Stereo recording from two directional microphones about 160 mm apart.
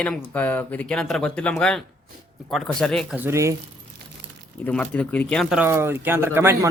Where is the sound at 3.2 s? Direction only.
15° right (ahead or behind).